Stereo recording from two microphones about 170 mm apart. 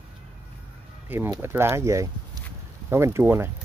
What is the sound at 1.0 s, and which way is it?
Speech, 10° right (ahead or behind).